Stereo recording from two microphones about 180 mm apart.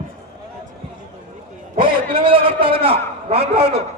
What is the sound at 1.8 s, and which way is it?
A man's voice, 30° right (ahead or behind).